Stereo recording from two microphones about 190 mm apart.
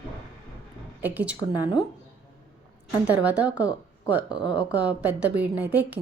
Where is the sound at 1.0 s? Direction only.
10° right (ahead or behind).